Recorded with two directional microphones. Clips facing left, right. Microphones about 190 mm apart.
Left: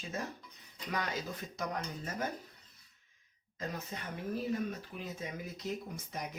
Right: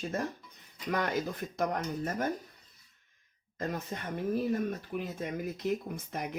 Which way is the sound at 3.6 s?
50° right (ahead or behind).